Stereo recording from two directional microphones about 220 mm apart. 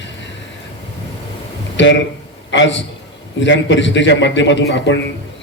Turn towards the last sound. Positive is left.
turn(degrees=55)  # may be behind; listen again after turning